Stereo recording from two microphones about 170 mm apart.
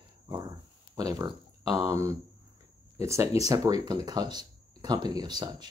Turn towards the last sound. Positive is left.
turn(degrees=-25)  # may be behind; listen again after turning